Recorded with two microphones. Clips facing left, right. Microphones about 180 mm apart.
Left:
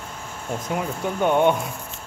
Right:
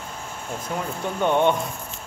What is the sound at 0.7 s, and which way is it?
Speech, 15° left (ahead or behind).